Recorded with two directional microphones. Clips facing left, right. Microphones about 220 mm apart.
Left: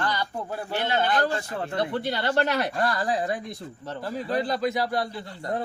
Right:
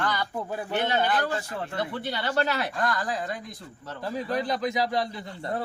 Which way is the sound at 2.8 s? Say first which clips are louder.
Left 3 dB; 30° left (ahead or behind).